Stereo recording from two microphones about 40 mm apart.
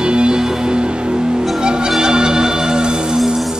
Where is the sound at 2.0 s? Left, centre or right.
Centre.